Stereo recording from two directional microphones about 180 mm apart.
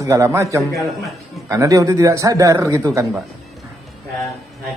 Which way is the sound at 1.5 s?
15° right (ahead or behind).